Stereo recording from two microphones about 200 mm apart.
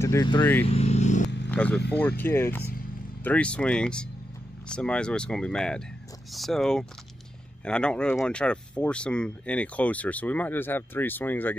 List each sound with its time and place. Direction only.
0.0 s speech: 15° left (ahead or behind)
0.7 s vehicle: 30° left (ahead or behind)
1.5 s speech: 5° left (ahead or behind)